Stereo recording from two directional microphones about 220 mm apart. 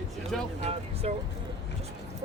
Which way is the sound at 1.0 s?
30° right (ahead or behind).